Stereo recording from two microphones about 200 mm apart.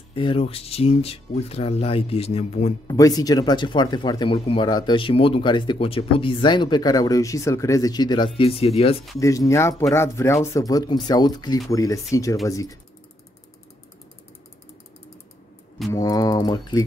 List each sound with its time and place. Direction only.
0.1 s speech: 25° left (ahead or behind)
2.9 s speech: 15° left (ahead or behind)
9.2 s speech: 15° left (ahead or behind)
15.9 s speech: 20° left (ahead or behind)